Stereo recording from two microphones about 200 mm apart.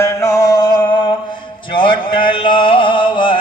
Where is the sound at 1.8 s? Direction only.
25° left (ahead or behind).